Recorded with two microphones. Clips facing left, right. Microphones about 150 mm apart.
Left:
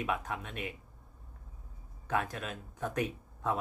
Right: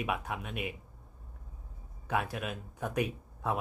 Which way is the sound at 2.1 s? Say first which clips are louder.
Right 1 dB; 10° right (ahead or behind).